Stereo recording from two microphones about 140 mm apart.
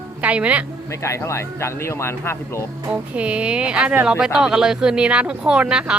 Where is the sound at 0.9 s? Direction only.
20° left (ahead or behind).